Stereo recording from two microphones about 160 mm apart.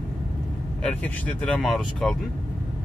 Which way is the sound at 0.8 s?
10° left (ahead or behind).